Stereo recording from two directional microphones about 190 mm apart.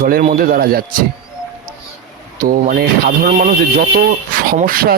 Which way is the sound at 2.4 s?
50° right (ahead or behind).